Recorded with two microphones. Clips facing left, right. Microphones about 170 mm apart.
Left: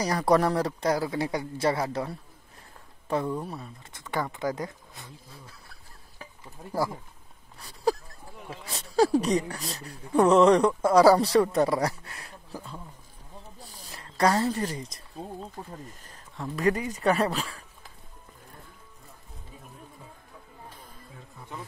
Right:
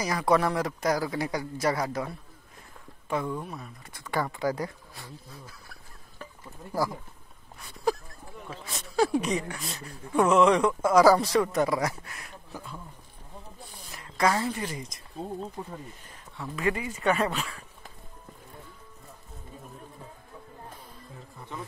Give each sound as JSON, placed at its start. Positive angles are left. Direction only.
{"t": 0.0, "sound": "speech", "side_deg": 35}
{"t": 3.3, "sound": "speech", "side_deg": 30}
{"t": 7.6, "sound": "a sound", "side_deg": 35}
{"t": 8.5, "sound": "a man's voice", "side_deg": 30}
{"t": 13.6, "sound": "a sound", "side_deg": 40}
{"t": 16.3, "sound": "a man's voice", "side_deg": 40}